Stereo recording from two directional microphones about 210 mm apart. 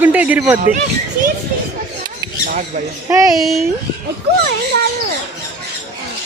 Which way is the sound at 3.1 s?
15° right (ahead or behind).